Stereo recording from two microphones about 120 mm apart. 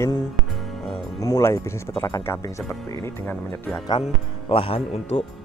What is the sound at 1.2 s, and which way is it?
Speech, 25° left (ahead or behind).